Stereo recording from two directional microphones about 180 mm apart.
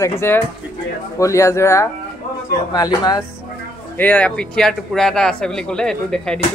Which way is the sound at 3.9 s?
10° left (ahead or behind).